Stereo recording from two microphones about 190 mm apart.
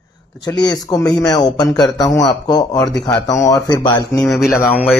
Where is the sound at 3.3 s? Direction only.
20° left (ahead or behind).